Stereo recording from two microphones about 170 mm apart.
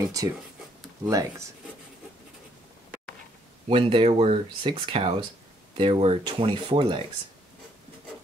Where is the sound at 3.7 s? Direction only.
30° right (ahead or behind).